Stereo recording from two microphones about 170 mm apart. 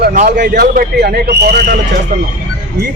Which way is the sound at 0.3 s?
65° right (ahead or behind).